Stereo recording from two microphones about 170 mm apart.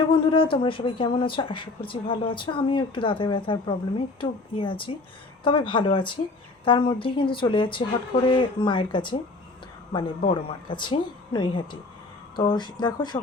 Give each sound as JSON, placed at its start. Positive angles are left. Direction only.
{"t": 0.1, "sound": "a woman's voice", "side_deg": 30}